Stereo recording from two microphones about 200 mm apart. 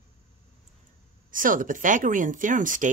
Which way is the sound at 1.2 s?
40° right (ahead or behind).